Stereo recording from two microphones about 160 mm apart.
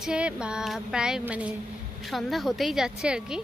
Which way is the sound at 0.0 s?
5° right (ahead or behind).